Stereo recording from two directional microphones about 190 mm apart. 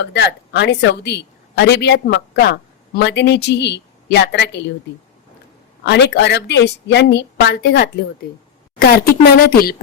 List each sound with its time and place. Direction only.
0.0 s a woman's voice: 65° left (ahead or behind)
5.8 s a woman's voice: 65° left (ahead or behind)